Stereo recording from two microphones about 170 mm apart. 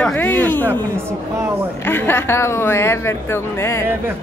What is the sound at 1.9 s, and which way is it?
A woman's voice, 10° left (ahead or behind).